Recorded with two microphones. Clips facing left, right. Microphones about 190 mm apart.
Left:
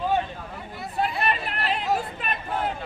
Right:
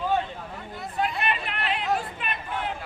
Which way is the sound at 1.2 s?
40° left (ahead or behind).